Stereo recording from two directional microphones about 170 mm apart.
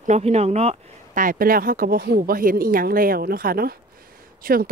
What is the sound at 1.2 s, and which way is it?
Speech, 55° right (ahead or behind).